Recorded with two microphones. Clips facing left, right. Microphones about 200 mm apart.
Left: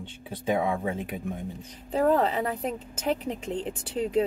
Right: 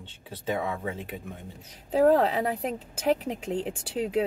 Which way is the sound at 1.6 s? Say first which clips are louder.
Right 4 dB; 5° right (ahead or behind).